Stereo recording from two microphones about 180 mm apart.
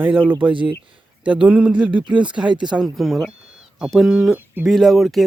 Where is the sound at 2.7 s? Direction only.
Centre (ahead or behind).